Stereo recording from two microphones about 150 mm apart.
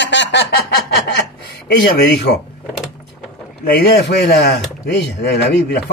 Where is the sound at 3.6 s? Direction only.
90° left.